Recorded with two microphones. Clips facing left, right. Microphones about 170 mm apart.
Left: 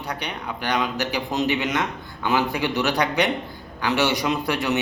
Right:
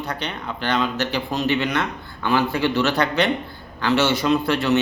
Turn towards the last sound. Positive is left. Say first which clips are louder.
# right 4 dB
turn(degrees=15)  # may be behind; listen again after turning